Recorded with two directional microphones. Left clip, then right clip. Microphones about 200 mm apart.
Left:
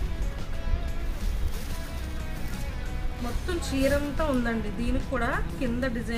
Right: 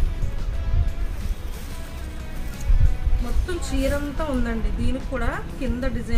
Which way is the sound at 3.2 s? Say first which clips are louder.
Right 2 dB; centre (ahead or behind).